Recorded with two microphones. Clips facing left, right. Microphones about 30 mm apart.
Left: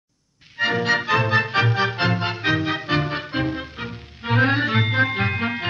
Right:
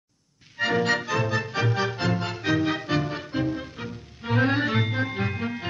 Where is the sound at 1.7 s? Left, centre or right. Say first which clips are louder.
Left 4 dB; left.